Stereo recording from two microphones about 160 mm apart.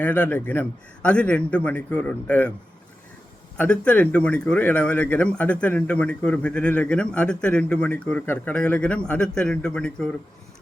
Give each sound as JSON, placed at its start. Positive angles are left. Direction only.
{"t": 0.0, "sound": "speech", "side_deg": 10}
{"t": 3.6, "sound": "speech", "side_deg": 10}